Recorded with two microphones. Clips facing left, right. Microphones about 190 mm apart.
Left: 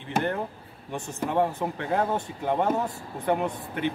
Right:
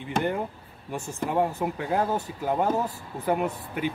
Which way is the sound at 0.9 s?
10° right (ahead or behind).